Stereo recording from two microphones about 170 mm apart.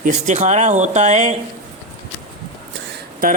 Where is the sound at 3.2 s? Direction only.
55° right (ahead or behind).